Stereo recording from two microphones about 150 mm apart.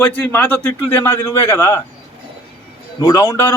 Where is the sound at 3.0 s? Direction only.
25° left (ahead or behind).